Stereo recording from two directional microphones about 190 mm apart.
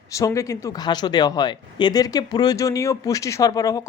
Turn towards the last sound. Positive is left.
turn(degrees=20)  # may be behind; listen again after turning